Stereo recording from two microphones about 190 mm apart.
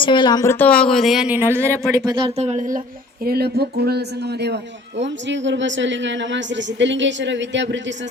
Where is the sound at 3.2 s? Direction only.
55° right (ahead or behind).